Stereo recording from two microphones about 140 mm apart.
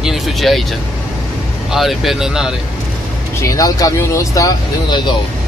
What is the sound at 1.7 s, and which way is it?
Speech, centre (ahead or behind).